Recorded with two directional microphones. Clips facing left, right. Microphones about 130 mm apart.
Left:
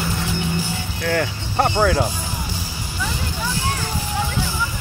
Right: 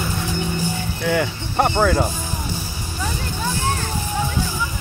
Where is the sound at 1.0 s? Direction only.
10° right (ahead or behind).